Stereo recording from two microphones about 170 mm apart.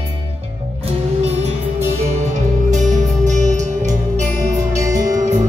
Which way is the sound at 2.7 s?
45° right (ahead or behind).